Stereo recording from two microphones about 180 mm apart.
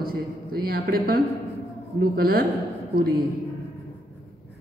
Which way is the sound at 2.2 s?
55° right (ahead or behind).